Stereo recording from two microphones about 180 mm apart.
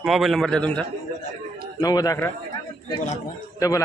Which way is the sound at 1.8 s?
20° left (ahead or behind).